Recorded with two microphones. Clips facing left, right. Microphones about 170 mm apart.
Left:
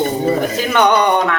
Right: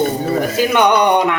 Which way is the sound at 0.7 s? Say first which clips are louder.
Even; 15° right (ahead or behind).